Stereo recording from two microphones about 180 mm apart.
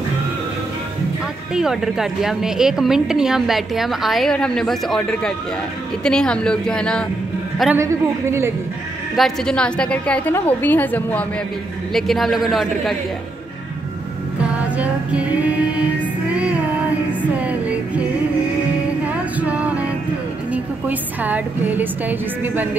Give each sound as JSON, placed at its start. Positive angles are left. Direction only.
{"t": 1.5, "sound": "a woman's voice", "side_deg": 0}
{"t": 7.7, "sound": "a woman's voice", "side_deg": -15}
{"t": 9.1, "sound": "a woman's voice", "side_deg": 0}
{"t": 14.4, "sound": "music", "side_deg": -5}
{"t": 16.3, "sound": "child singing", "side_deg": -5}
{"t": 17.1, "sound": "music", "side_deg": -10}
{"t": 19.0, "sound": "music", "side_deg": -10}
{"t": 20.5, "sound": "a woman's voice", "side_deg": -10}